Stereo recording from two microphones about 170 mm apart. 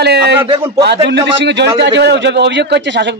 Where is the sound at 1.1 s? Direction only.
90° right.